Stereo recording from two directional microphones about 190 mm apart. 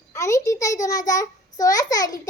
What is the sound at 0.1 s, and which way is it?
A child's voice, 15° left (ahead or behind).